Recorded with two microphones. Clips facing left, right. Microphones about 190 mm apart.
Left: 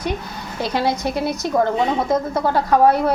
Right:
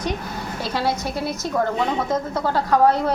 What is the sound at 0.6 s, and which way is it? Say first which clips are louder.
Speech: left 4 dB; 15° left (ahead or behind).